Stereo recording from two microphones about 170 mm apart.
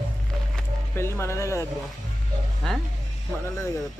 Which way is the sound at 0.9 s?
15° left (ahead or behind).